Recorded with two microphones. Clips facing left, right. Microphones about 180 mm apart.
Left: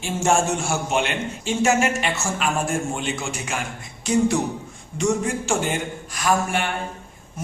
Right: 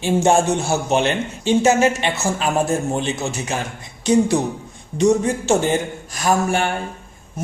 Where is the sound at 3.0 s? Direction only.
35° right (ahead or behind).